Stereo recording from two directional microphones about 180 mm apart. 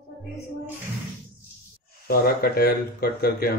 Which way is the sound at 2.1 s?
55° left (ahead or behind).